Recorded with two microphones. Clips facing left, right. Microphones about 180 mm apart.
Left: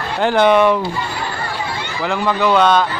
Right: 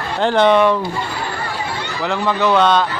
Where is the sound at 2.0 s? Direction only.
5° left (ahead or behind).